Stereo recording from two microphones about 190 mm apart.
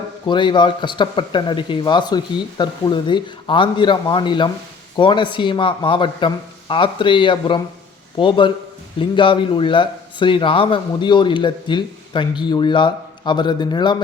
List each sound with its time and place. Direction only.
0.3 s a man's voice: 25° left (ahead or behind)